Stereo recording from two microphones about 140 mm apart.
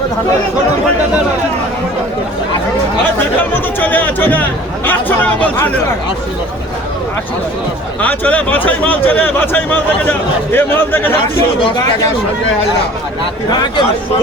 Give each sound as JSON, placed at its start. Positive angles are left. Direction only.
{"t": 3.5, "sound": "speech", "side_deg": 10}
{"t": 8.0, "sound": "speech", "side_deg": 10}
{"t": 13.5, "sound": "speech", "side_deg": 30}